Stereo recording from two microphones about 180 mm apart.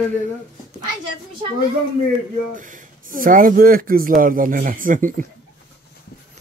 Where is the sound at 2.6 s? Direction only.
45° right (ahead or behind).